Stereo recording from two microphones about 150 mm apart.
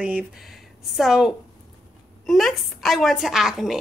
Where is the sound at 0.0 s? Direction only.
10° right (ahead or behind).